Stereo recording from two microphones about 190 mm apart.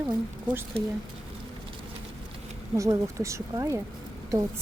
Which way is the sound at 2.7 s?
15° right (ahead or behind).